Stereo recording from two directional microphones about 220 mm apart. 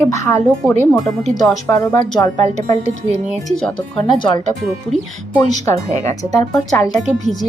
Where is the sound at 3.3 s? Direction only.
Centre (ahead or behind).